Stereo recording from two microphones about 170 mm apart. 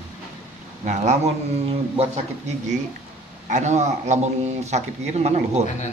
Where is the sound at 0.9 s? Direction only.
40° right (ahead or behind).